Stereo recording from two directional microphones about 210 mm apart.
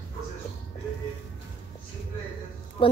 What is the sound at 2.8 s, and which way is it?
Music, 25° left (ahead or behind).